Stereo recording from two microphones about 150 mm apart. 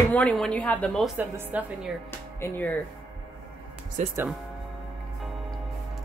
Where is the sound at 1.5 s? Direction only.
10° right (ahead or behind).